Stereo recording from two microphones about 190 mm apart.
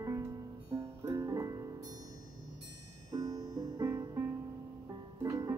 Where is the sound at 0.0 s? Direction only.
15° right (ahead or behind).